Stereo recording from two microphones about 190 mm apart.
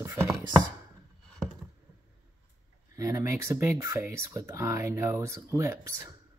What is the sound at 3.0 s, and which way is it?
Speech, 15° right (ahead or behind).